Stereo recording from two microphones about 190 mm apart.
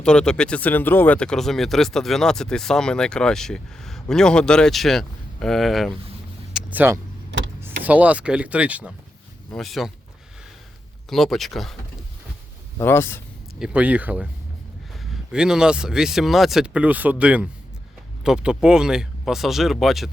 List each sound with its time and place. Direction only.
0.0 s speech: 5° left (ahead or behind)
6.5 s vehicle: 5° right (ahead or behind)
7.3 s vehicle: 70° right (ahead or behind)
7.9 s speech: 10° right (ahead or behind)
11.1 s speech: centre (ahead or behind)
12.8 s a man's voice: 10° left (ahead or behind)
13.6 s speech: 5° right (ahead or behind)